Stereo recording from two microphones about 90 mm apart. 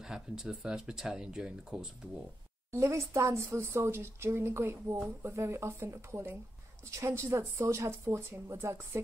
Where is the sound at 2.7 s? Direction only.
30° right (ahead or behind).